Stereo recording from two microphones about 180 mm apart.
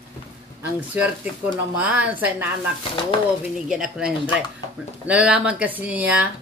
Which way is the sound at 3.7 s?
5° right (ahead or behind).